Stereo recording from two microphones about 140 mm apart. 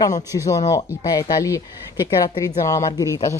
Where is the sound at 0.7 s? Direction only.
25° left (ahead or behind).